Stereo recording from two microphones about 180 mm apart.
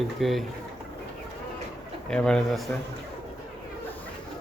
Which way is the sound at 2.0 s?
5° left (ahead or behind).